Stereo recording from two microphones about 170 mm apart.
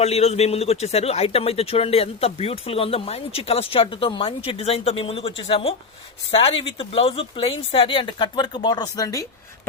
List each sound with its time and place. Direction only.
0.0 s speech: 40° left (ahead or behind); by 9.2 s 20° left (ahead or behind)